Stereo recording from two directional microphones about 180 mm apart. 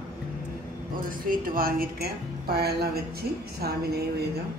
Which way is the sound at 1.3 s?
55° right (ahead or behind).